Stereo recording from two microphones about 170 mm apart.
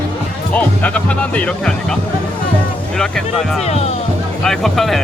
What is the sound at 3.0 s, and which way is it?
Speech, 5° left (ahead or behind).